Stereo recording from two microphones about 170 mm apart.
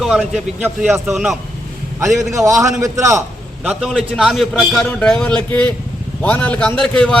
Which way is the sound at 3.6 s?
Centre (ahead or behind).